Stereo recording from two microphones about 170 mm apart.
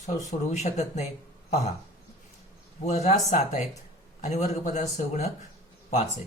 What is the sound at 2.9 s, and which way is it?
Speech, 45° left (ahead or behind).